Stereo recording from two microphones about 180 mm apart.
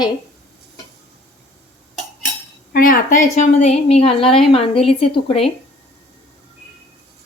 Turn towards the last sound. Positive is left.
turn(degrees=35)  # may be behind; listen again after turning